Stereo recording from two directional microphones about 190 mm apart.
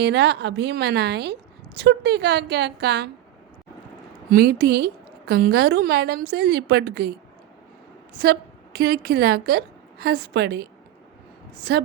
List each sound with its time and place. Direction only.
0.0 s a woman's voice: 65° right (ahead or behind)
4.3 s a woman's voice: 55° right (ahead or behind)
8.2 s a woman's voice: 55° right (ahead or behind)